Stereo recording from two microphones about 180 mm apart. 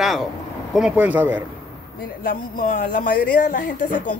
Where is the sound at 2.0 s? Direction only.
55° left (ahead or behind).